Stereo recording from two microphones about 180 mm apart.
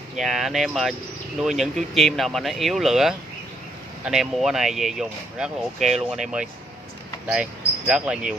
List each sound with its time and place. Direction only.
0.1 s speech: centre (ahead or behind)